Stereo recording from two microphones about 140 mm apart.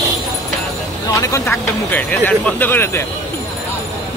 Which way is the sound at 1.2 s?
20° left (ahead or behind).